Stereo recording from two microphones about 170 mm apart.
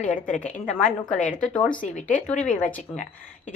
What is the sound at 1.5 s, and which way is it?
Speech, 5° left (ahead or behind).